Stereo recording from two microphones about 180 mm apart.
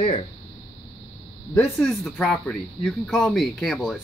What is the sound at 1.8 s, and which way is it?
Speech, 5° left (ahead or behind).